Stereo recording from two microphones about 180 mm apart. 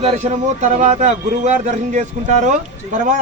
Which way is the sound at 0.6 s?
40° right (ahead or behind).